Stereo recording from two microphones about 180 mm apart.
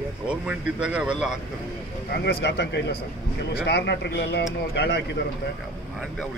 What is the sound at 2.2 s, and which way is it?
Speech, 70° left (ahead or behind).